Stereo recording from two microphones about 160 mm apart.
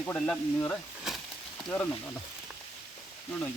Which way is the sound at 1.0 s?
Centre (ahead or behind).